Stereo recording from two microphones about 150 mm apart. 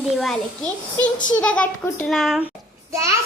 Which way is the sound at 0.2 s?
5° left (ahead or behind).